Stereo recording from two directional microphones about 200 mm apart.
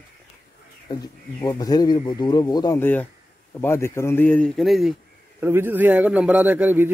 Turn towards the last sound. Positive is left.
turn(degrees=-10)  # may be behind; listen again after turning